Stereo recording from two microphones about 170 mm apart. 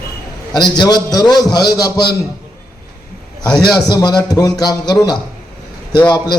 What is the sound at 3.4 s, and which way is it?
A man's voice, 25° left (ahead or behind).